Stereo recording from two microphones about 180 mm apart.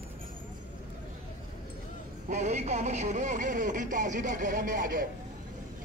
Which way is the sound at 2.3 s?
40° right (ahead or behind).